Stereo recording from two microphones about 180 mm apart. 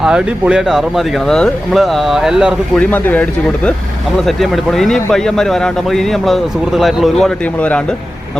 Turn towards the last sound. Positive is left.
turn(degrees=5)  # may be behind; listen again after turning